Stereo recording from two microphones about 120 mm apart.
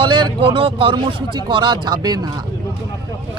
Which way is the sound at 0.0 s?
40° right (ahead or behind).